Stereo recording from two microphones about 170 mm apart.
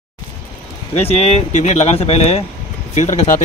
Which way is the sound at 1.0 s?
40° left (ahead or behind).